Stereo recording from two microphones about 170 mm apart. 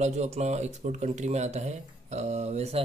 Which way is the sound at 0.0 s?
40° right (ahead or behind).